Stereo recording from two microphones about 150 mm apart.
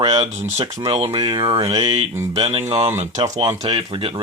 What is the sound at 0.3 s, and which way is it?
Speech, 50° right (ahead or behind).